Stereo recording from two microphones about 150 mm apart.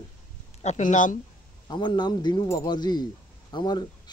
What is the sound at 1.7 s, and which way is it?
A man's voice, 30° left (ahead or behind).